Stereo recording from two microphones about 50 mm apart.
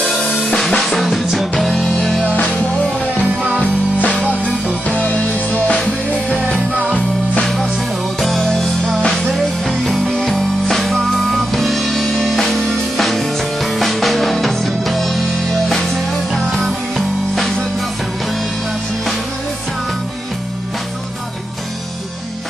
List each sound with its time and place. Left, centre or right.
0.5 s drum kit: centre
1.2 s music: centre
2.3 s music: left
8.2 s music: centre